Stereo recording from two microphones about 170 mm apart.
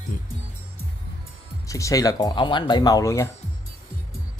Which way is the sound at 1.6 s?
20° left (ahead or behind).